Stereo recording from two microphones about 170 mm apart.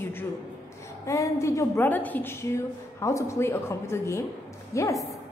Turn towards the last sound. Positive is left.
turn(degrees=20)  # may be behind; listen again after turning